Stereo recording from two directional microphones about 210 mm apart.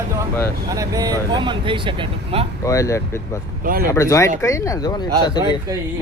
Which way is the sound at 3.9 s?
15° left (ahead or behind).